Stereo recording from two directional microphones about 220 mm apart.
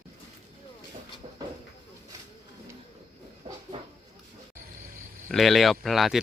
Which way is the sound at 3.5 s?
20° right (ahead or behind).